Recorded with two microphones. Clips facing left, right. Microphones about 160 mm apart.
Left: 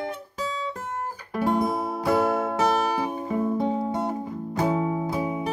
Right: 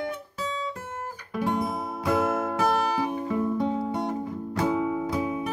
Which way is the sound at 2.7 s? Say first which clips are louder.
Left 1 dB; 15° left (ahead or behind).